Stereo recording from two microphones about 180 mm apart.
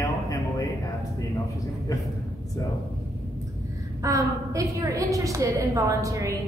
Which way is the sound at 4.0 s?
20° right (ahead or behind).